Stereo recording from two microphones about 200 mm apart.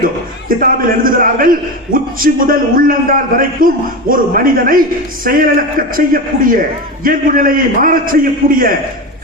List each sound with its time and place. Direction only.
0.0 s a man's voice: 45° right (ahead or behind)